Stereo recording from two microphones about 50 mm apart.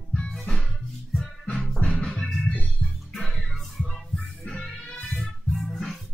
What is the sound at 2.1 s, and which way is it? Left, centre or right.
Organ, centre.